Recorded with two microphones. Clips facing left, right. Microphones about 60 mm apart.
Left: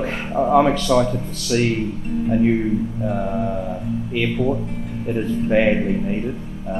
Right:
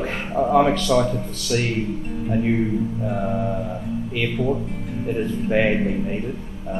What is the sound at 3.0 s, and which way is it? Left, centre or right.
Speech, centre.